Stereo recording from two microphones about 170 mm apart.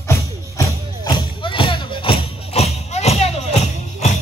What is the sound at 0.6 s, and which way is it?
Music, 20° left (ahead or behind).